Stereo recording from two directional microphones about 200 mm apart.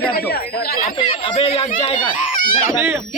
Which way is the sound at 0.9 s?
30° left (ahead or behind).